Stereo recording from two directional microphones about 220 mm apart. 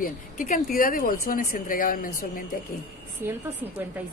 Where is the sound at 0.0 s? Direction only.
40° left (ahead or behind).